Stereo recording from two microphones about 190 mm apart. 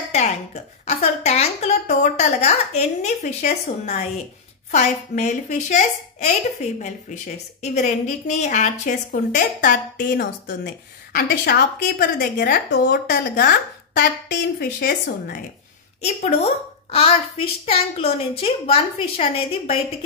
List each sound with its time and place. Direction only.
0.1 s a sound: 35° left (ahead or behind)
0.8 s a woman's voice: 35° left (ahead or behind)
10.0 s a woman's voice: 60° left (ahead or behind)
16.0 s a child's voice: 35° left (ahead or behind)